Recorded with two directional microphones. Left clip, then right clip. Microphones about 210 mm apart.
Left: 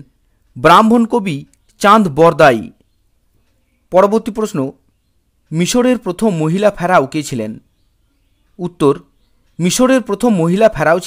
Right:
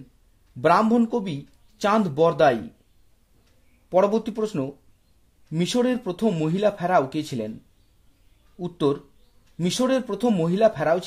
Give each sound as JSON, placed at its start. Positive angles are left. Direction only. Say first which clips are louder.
{"t": 0.6, "sound": "speech", "louder": "left 11 dB", "side_deg": 30}
{"t": 3.9, "sound": "speech", "louder": "left 9 dB", "side_deg": 30}
{"t": 8.5, "sound": "speech", "louder": "left 10 dB", "side_deg": 30}